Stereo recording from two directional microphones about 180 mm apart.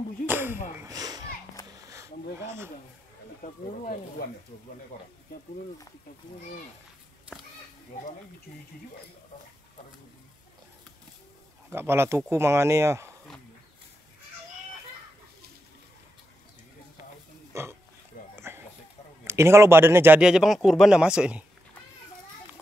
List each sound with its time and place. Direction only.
0.3 s a sound: 10° right (ahead or behind)
2.4 s speech: 15° right (ahead or behind)
3.4 s speech: 45° left (ahead or behind)
11.7 s speech: 15° right (ahead or behind)
17.5 s speech: 15° right (ahead or behind)
18.1 s a sound: 50° left (ahead or behind)
19.2 s speech: 15° right (ahead or behind)